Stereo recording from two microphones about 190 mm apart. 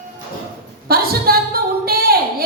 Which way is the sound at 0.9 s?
50° right (ahead or behind).